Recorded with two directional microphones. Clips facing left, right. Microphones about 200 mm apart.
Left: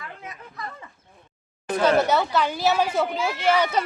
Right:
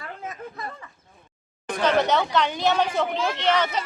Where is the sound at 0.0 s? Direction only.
40° right (ahead or behind).